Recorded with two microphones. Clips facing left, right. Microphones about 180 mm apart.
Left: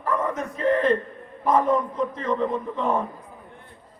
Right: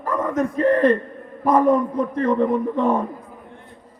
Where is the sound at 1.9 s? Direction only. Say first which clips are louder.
Right 5 dB; 55° right (ahead or behind).